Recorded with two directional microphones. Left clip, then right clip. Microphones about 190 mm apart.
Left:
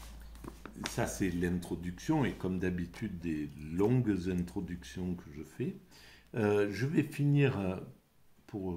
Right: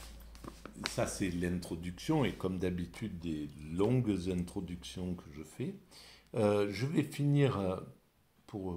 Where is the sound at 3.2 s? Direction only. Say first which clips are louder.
Left 3 dB; 65° right (ahead or behind).